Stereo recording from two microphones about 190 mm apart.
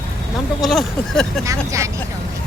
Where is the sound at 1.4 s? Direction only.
15° right (ahead or behind).